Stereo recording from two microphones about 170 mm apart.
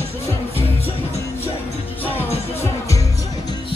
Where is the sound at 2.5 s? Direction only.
15° left (ahead or behind).